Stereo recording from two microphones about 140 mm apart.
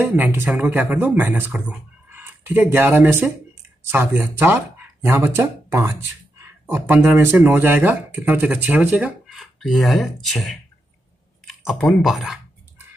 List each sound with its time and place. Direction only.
0.0 s speech: 15° right (ahead or behind)
9.4 s speech: centre (ahead or behind)